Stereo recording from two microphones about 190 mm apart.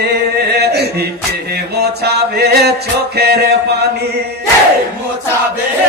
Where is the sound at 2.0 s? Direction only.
60° right (ahead or behind).